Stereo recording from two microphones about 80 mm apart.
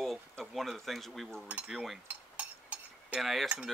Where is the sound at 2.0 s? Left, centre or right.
Centre.